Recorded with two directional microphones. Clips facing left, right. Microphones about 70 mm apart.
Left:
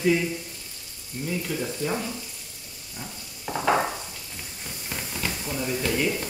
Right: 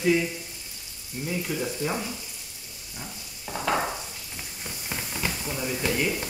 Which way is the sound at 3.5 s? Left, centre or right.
Left.